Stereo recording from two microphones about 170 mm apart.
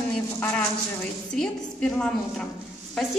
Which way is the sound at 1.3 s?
5° left (ahead or behind).